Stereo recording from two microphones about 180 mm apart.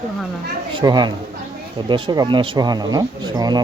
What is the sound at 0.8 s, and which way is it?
Speech, 25° right (ahead or behind).